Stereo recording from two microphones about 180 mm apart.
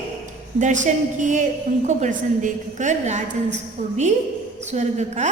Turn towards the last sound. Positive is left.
turn(degrees=-40)  # may be behind; listen again after turning